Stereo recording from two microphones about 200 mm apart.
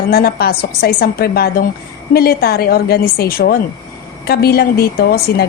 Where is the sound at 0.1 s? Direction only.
50° left (ahead or behind).